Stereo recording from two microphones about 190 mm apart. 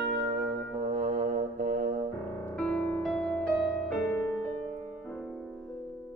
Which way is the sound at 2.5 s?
5° left (ahead or behind).